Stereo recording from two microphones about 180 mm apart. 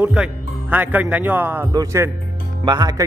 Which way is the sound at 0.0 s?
10° right (ahead or behind).